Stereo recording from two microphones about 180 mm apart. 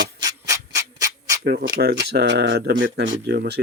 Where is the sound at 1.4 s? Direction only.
65° right (ahead or behind).